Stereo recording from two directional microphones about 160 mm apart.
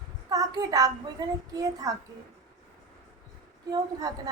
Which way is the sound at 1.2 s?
25° right (ahead or behind).